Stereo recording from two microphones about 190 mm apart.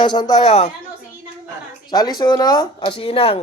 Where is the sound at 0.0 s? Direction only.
25° left (ahead or behind).